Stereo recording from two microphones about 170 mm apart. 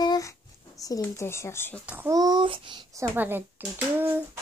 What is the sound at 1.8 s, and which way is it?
Speech, 10° right (ahead or behind).